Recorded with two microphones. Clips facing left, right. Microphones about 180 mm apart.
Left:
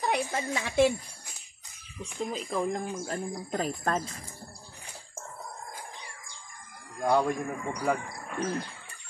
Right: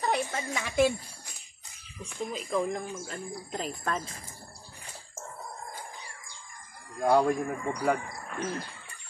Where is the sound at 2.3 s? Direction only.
35° left (ahead or behind).